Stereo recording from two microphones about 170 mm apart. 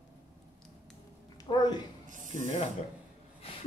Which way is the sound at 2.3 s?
40° left (ahead or behind).